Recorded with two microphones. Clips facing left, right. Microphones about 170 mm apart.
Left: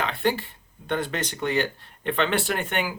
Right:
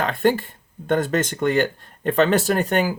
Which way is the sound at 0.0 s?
45° right (ahead or behind).